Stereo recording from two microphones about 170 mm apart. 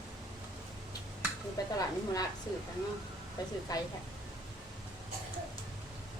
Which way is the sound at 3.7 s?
20° left (ahead or behind).